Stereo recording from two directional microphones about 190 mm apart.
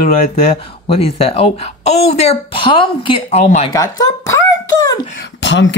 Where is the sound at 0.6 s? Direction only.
30° left (ahead or behind).